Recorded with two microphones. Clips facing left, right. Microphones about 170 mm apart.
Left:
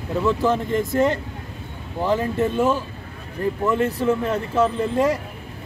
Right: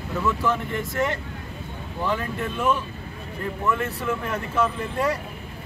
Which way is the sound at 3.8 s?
35° left (ahead or behind).